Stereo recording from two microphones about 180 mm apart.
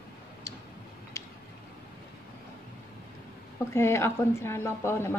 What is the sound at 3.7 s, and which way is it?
A woman's voice, 15° left (ahead or behind).